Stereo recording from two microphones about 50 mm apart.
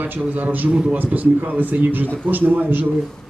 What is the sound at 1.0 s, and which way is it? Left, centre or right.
A man's voice, right.